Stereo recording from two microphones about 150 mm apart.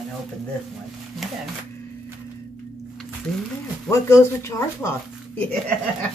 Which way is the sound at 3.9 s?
20° left (ahead or behind).